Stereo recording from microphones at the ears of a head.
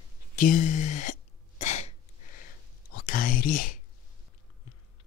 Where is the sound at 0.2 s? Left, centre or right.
Left.